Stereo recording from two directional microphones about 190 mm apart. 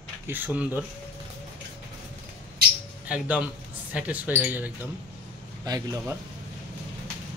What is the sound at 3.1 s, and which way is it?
Speech, 5° right (ahead or behind).